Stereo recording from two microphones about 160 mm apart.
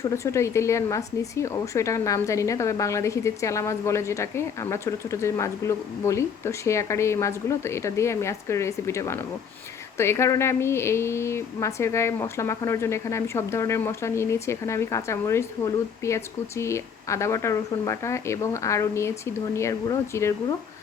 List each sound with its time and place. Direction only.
0.0 s a woman's voice: 20° left (ahead or behind)